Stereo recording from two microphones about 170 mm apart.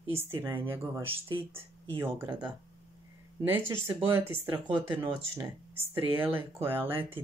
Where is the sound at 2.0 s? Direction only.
15° right (ahead or behind).